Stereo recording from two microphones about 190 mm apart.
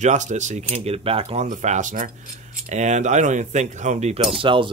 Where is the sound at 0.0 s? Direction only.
40° right (ahead or behind).